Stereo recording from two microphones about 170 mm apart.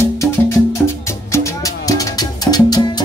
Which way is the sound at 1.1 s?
15° left (ahead or behind).